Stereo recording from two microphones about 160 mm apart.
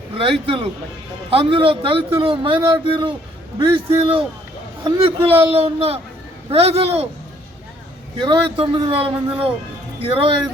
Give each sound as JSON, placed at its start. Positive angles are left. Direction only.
{"t": 0.2, "sound": "a man's voice", "side_deg": -35}
{"t": 8.2, "sound": "a man's voice", "side_deg": -30}